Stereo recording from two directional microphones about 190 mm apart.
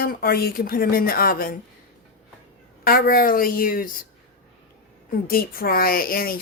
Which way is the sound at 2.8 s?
50° left (ahead or behind).